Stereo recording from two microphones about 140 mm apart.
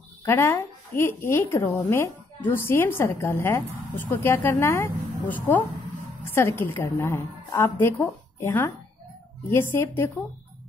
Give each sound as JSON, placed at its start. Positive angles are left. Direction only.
{"t": 0.2, "sound": "a woman's voice", "side_deg": 20}